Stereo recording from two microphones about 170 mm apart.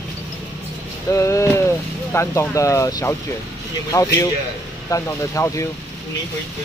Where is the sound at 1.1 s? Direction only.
15° left (ahead or behind).